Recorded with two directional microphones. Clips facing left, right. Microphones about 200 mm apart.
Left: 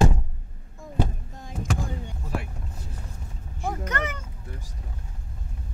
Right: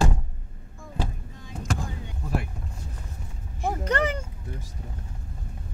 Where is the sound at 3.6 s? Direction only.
30° right (ahead or behind).